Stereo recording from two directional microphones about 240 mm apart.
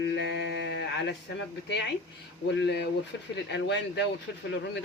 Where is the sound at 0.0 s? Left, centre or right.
Left.